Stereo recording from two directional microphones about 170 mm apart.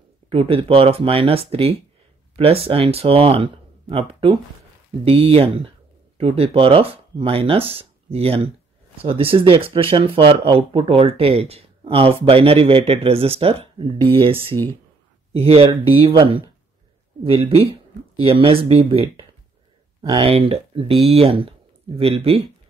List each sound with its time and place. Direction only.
0.3 s speech: 35° right (ahead or behind)
15.3 s speech: 35° right (ahead or behind)
20.0 s speech: 20° right (ahead or behind)
20.2 s speech: 35° right (ahead or behind)